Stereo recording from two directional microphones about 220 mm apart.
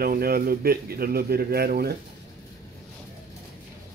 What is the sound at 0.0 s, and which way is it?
A man's voice, 45° right (ahead or behind).